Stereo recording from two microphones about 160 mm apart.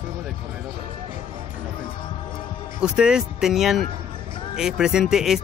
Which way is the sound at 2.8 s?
5° right (ahead or behind).